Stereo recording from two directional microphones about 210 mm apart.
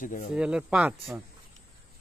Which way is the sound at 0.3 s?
5° right (ahead or behind).